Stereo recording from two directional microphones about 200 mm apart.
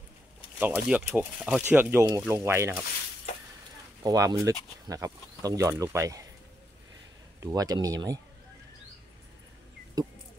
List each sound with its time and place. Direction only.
0.6 s speech: 10° right (ahead or behind)
4.0 s speech: 20° right (ahead or behind)
7.3 s speech: 20° right (ahead or behind)
10.0 s bird: 20° right (ahead or behind)